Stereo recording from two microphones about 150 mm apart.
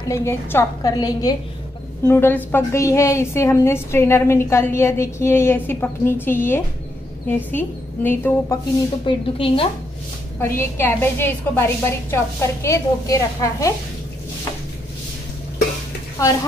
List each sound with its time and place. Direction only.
0.1 s a woman's voice: 15° left (ahead or behind)
9.0 s a woman's voice: 40° left (ahead or behind)
10.4 s a woman's voice: 15° left (ahead or behind)
16.2 s a woman's voice: 25° left (ahead or behind)